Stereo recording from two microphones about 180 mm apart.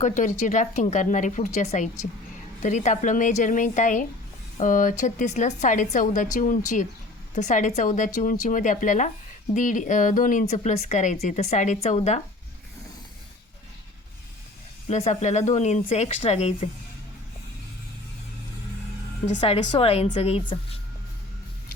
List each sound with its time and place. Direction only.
0.0 s a woman's voice: 45° left (ahead or behind)
14.8 s a woman's voice: 40° left (ahead or behind)
19.7 s a woman's voice: 30° left (ahead or behind)